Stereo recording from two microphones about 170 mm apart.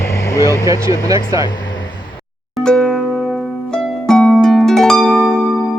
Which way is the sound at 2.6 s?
Centre (ahead or behind).